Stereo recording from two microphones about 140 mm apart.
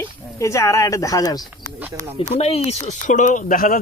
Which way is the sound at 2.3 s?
45° left (ahead or behind).